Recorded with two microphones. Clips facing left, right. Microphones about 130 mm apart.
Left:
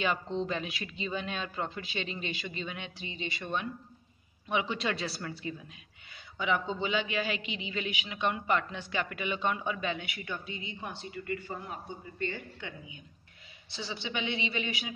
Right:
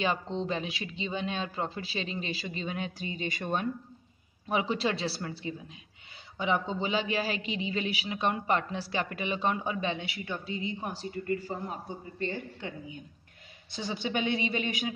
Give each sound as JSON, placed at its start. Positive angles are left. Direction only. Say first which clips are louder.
{"t": 0.0, "sound": "a woman's voice", "louder": "right 1 dB", "side_deg": -30}